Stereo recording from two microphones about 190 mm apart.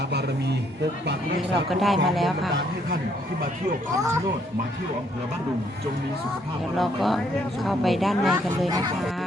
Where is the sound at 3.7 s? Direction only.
45° right (ahead or behind).